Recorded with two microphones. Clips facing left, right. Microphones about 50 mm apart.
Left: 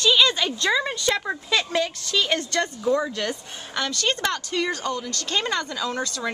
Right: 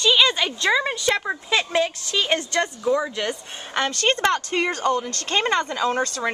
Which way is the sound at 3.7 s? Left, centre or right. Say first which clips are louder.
Right 4 dB; right.